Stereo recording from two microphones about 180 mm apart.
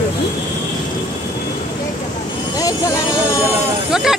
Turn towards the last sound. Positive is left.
turn(degrees=-5)  # may be behind; listen again after turning